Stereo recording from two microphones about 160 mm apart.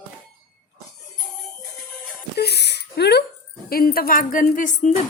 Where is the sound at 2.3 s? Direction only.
90° left.